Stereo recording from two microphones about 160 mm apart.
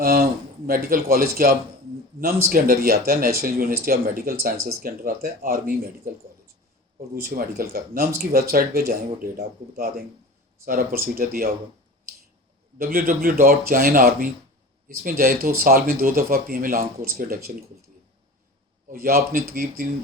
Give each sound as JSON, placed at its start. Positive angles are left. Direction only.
{"t": 0.0, "sound": "speech", "side_deg": -65}
{"t": 7.3, "sound": "speech", "side_deg": -65}
{"t": 11.2, "sound": "speech", "side_deg": -65}
{"t": 12.8, "sound": "speech", "side_deg": -70}
{"t": 18.9, "sound": "speech", "side_deg": -65}